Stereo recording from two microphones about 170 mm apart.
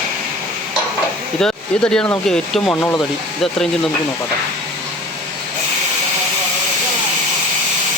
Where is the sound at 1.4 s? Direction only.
5° left (ahead or behind).